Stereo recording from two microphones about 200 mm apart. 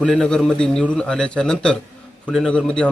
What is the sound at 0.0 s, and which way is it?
A man's voice, 5° left (ahead or behind).